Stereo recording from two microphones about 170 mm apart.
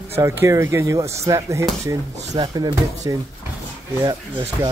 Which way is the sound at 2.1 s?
40° right (ahead or behind).